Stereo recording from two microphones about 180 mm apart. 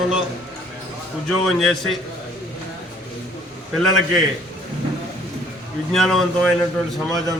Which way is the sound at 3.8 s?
Centre (ahead or behind).